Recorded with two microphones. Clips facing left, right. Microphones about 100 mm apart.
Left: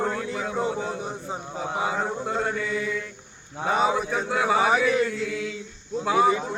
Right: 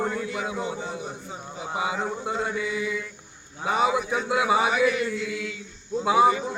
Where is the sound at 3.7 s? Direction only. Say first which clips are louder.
Left 1 dB; 35° left (ahead or behind).